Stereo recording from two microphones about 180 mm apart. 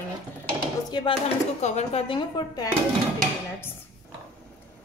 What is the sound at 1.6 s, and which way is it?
Speech, 40° left (ahead or behind).